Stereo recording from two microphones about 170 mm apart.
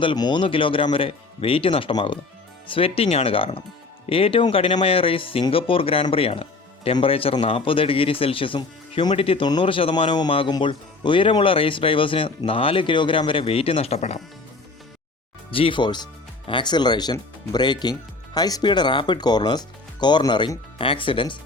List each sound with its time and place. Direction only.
0.0 s speech: 25° left (ahead or behind)
15.4 s speech: 30° left (ahead or behind)